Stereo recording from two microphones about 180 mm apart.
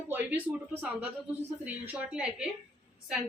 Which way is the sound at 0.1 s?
10° right (ahead or behind).